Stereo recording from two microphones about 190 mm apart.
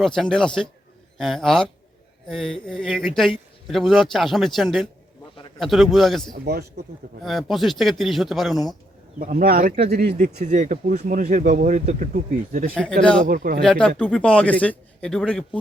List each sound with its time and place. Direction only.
0.0 s speech: 5° left (ahead or behind)
6.3 s speech: 55° right (ahead or behind)
7.3 s speech: centre (ahead or behind)
9.1 s speech: 50° right (ahead or behind)
12.7 s speech: 5° left (ahead or behind)
13.2 s speech: 50° right (ahead or behind)
13.6 s speech: 5° left (ahead or behind)